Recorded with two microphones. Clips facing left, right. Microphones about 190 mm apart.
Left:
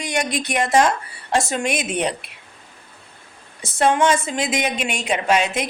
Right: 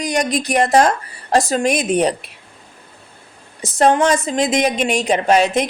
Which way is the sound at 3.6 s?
40° right (ahead or behind).